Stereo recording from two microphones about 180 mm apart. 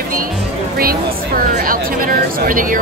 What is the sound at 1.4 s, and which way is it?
Speech, 50° right (ahead or behind).